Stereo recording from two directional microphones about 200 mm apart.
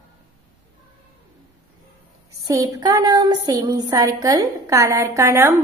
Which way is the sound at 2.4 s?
15° right (ahead or behind).